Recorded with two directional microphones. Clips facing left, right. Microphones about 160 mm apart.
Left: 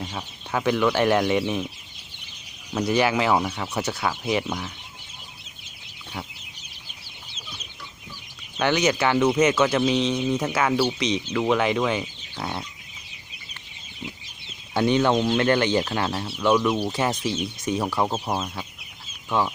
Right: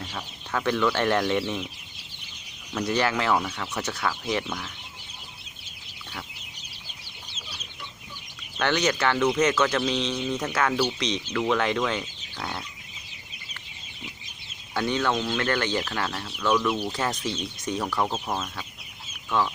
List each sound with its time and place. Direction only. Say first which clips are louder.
0.0 s speech: left 3 dB; 15° left (ahead or behind)
2.7 s speech: left 4 dB; 10° left (ahead or behind)
8.5 s speech: left 3 dB; 10° left (ahead or behind)
14.7 s speech: left 5 dB; 20° left (ahead or behind)